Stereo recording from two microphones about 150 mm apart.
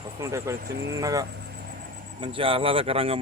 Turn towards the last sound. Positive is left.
turn(degrees=-40)  # may be behind; listen again after turning